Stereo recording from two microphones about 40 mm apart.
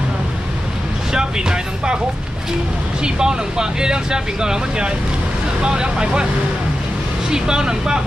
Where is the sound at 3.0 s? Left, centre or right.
Centre.